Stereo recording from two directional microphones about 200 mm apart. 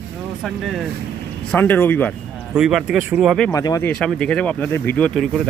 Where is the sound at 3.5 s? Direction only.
15° left (ahead or behind).